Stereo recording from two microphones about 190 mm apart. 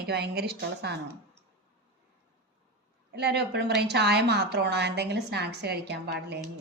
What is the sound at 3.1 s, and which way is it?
A woman's voice, 60° right (ahead or behind).